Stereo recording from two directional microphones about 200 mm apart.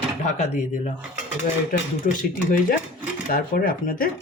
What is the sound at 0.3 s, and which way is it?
Speech, 40° left (ahead or behind).